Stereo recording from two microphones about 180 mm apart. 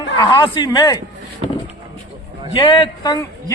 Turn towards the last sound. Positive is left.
turn(degrees=25)  # may be behind; listen again after turning